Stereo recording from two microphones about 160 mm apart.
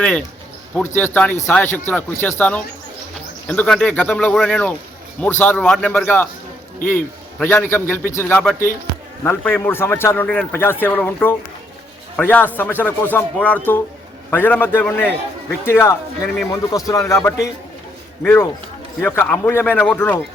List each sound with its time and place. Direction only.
0.9 s a man's voice: 10° left (ahead or behind)
3.5 s a man's voice: 10° left (ahead or behind)